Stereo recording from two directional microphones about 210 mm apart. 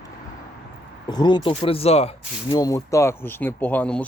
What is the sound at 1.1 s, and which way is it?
Speech, 20° left (ahead or behind).